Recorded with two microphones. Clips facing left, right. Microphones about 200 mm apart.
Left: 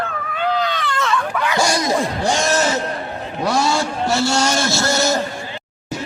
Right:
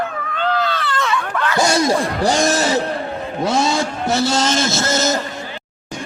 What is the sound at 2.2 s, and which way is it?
Speech, 35° right (ahead or behind).